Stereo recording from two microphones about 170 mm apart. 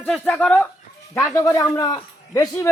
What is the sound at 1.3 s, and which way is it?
A man's voice, 20° left (ahead or behind).